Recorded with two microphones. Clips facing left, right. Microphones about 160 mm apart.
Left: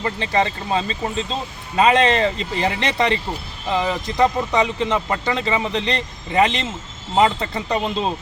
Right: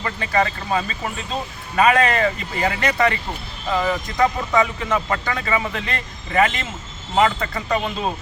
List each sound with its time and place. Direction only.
0.0 s speech: 25° left (ahead or behind)